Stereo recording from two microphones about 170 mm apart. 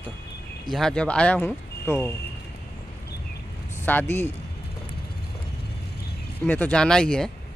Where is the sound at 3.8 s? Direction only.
10° left (ahead or behind).